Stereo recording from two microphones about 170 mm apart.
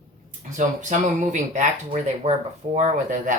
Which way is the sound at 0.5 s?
45° right (ahead or behind).